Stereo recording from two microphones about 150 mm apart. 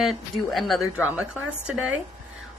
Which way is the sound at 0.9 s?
10° right (ahead or behind).